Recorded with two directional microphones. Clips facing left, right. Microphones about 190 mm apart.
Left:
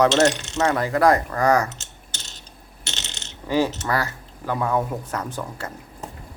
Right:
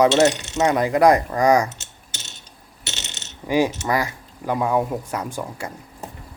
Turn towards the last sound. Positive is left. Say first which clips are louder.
# right 1 dB
turn(degrees=-10)  # may be behind; listen again after turning